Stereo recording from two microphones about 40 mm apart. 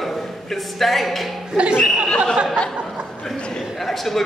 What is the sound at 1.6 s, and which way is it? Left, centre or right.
Speech, right.